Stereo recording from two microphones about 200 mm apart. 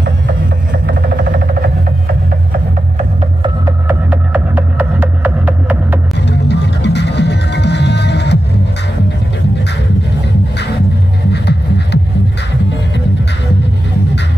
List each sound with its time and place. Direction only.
3.6 s music: 10° right (ahead or behind)
6.1 s music: 60° left (ahead or behind)
11.3 s music: 55° left (ahead or behind)